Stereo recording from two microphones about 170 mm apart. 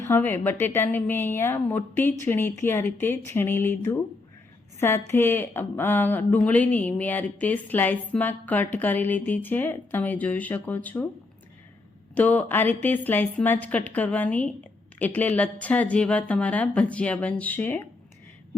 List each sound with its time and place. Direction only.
0.0 s speech: 10° left (ahead or behind)
12.1 s speech: 10° left (ahead or behind)